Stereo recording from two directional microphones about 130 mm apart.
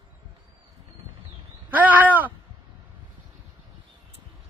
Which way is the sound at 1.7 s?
10° right (ahead or behind).